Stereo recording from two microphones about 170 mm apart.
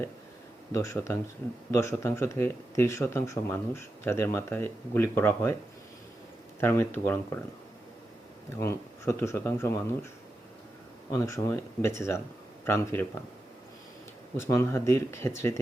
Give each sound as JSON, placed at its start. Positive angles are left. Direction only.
{"t": 0.7, "sound": "speech", "side_deg": 15}
{"t": 6.6, "sound": "speech", "side_deg": 15}
{"t": 8.5, "sound": "speech", "side_deg": 15}
{"t": 11.1, "sound": "speech", "side_deg": 15}
{"t": 14.3, "sound": "speech", "side_deg": 15}